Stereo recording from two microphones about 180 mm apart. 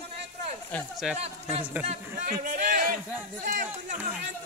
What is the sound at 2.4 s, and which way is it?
A man's voice, 45° right (ahead or behind).